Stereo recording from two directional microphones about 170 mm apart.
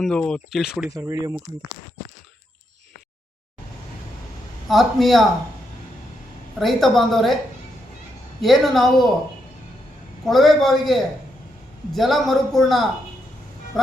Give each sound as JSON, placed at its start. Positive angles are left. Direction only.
{"t": 0.0, "sound": "a man's voice", "side_deg": 5}
{"t": 0.9, "sound": "speech", "side_deg": -20}
{"t": 4.7, "sound": "a man's voice", "side_deg": 0}
{"t": 6.6, "sound": "a man's voice", "side_deg": 0}
{"t": 8.4, "sound": "a man's voice", "side_deg": 0}
{"t": 10.2, "sound": "a man's voice", "side_deg": 0}